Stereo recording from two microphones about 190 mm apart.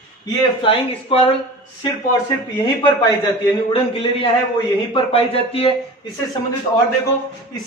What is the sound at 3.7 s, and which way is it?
Speech, 30° left (ahead or behind).